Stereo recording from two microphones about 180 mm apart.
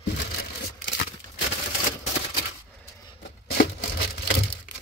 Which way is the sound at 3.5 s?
60° left (ahead or behind).